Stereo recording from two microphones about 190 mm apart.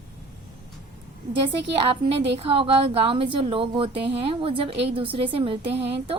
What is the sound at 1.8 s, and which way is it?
A woman's voice, 30° right (ahead or behind).